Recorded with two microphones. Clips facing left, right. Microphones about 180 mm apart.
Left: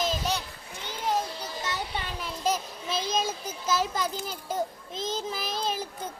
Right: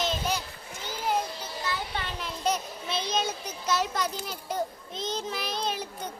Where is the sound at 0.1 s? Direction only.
Centre (ahead or behind).